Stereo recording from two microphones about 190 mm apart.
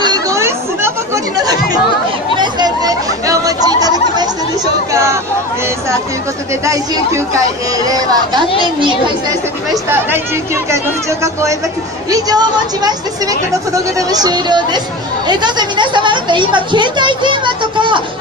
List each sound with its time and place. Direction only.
0.0 s chatter: 20° right (ahead or behind)
4.9 s a sound: 15° right (ahead or behind)
6.6 s a woman's voice: 15° right (ahead or behind)
9.8 s a woman's voice: 15° right (ahead or behind)